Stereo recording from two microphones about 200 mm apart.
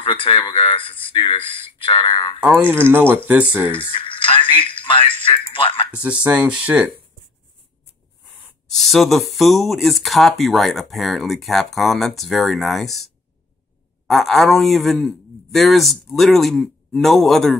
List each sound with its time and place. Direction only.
0.0 s speech: 25° left (ahead or behind)
2.9 s speech: 10° right (ahead or behind)
3.9 s speech: 25° left (ahead or behind)
5.9 s speech: 5° right (ahead or behind)
8.6 s speech: centre (ahead or behind)